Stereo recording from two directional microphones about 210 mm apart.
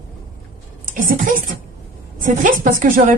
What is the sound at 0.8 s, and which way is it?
A woman's voice, 40° right (ahead or behind).